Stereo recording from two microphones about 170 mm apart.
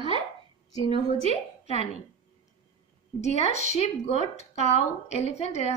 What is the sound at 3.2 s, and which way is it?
Speech, 40° left (ahead or behind).